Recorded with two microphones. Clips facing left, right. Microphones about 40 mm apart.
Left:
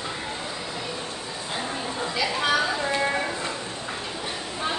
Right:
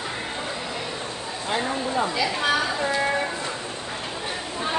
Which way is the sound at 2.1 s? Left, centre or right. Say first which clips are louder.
Right 1 dB; centre.